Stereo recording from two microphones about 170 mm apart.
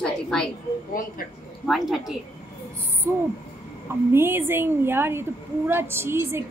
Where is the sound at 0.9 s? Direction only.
55° left (ahead or behind).